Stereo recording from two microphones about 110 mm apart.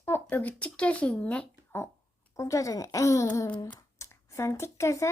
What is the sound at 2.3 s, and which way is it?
A woman's voice, 30° left (ahead or behind).